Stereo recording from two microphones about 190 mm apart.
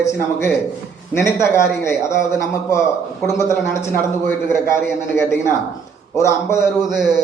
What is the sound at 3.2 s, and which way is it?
Speech, 15° left (ahead or behind).